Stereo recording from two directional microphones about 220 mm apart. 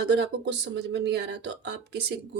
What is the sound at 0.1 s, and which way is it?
Speech, 50° right (ahead or behind).